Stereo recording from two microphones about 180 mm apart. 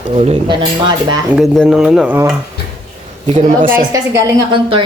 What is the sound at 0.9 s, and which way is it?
Speech, 25° right (ahead or behind).